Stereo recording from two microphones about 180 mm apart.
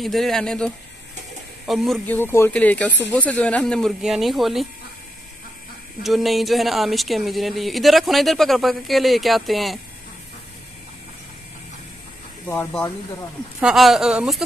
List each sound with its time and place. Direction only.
0.0 s speech: centre (ahead or behind)
1.7 s speech: centre (ahead or behind)
2.1 s speech: 15° left (ahead or behind)
6.0 s speech: centre (ahead or behind)
12.4 s speech: 10° left (ahead or behind)
13.6 s speech: 5° right (ahead or behind)